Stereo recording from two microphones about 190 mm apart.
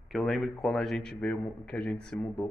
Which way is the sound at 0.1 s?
Centre (ahead or behind).